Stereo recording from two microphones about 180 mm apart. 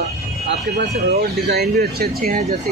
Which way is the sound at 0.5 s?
65° right (ahead or behind).